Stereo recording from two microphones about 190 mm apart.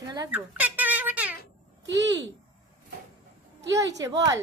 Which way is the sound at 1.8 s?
70° right (ahead or behind).